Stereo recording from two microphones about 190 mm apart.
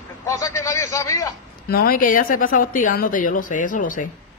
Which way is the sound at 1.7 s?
50° left (ahead or behind).